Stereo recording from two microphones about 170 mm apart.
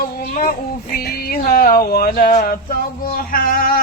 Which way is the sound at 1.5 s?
60° left (ahead or behind).